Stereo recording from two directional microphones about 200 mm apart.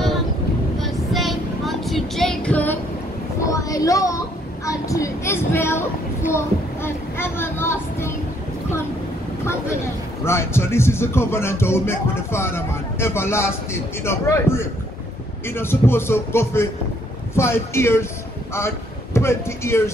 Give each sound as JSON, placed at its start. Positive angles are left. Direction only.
{"t": 0.7, "sound": "child singing", "side_deg": 0}
{"t": 3.4, "sound": "a sound", "side_deg": 15}
{"t": 9.4, "sound": "vehicle", "side_deg": 15}
{"t": 10.2, "sound": "speech", "side_deg": 15}
{"t": 19.1, "sound": "speech", "side_deg": 15}